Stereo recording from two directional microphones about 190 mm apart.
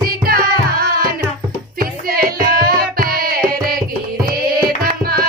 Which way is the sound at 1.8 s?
50° right (ahead or behind).